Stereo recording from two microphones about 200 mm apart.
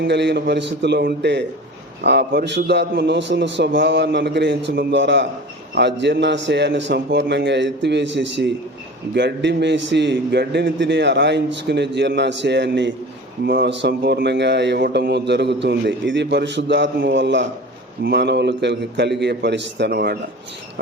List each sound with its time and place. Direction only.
0.0 s a man's voice: 60° right (ahead or behind)